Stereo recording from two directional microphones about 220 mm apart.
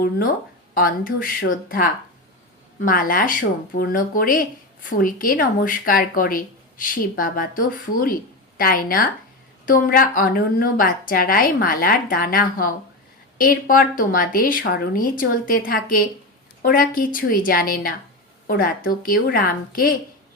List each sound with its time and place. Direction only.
0.7 s speech: 40° left (ahead or behind)
2.8 s speech: 40° left (ahead or behind)